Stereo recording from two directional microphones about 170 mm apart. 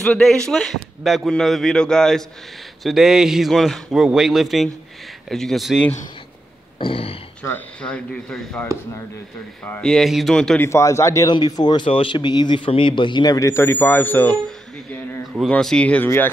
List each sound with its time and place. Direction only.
0.0 s a man's voice: centre (ahead or behind)
6.8 s speech: 35° left (ahead or behind)
7.4 s a man's voice: 10° left (ahead or behind)
9.7 s a man's voice: 5° left (ahead or behind)
10.7 s speech: 15° left (ahead or behind)
15.5 s speech: 5° left (ahead or behind)